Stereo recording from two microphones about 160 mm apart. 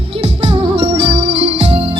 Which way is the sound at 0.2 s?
30° right (ahead or behind).